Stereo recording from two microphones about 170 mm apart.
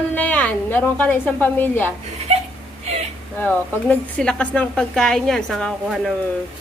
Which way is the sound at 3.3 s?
10° left (ahead or behind).